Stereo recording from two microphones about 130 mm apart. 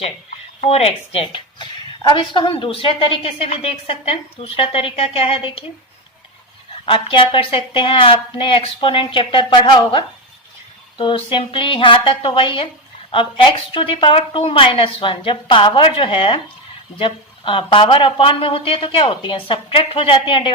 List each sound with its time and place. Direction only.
0.6 s a woman's voice: 50° left (ahead or behind)
6.8 s a woman's voice: 45° left (ahead or behind)